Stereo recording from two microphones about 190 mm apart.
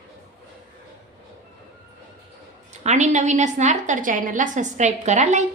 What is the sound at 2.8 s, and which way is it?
A woman's voice, 35° right (ahead or behind).